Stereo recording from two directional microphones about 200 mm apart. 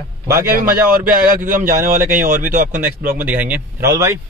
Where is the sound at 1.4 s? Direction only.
40° right (ahead or behind).